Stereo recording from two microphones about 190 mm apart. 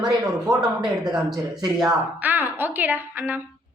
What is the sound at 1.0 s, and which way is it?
A man's voice, 5° right (ahead or behind).